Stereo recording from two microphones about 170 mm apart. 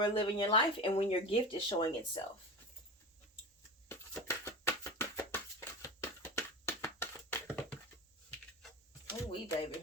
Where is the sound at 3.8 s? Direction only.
15° left (ahead or behind).